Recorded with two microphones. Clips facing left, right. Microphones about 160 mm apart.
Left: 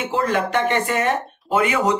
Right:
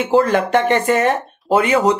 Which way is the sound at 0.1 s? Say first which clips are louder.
Right 7 dB; 40° right (ahead or behind).